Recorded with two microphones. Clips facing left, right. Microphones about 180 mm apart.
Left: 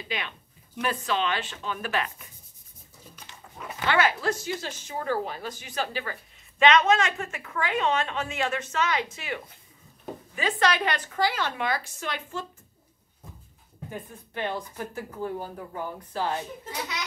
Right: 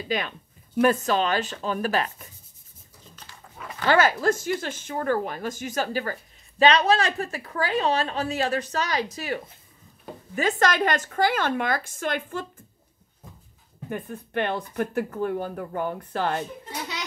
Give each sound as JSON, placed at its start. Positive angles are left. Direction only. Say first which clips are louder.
{"t": 0.1, "sound": "a woman's voice", "louder": "right 6 dB", "side_deg": -40}
{"t": 3.3, "sound": "dog", "louder": "even", "side_deg": 20}
{"t": 3.8, "sound": "a woman's voice", "louder": "right 4 dB", "side_deg": -40}
{"t": 13.8, "sound": "speech", "louder": "right 6 dB", "side_deg": -65}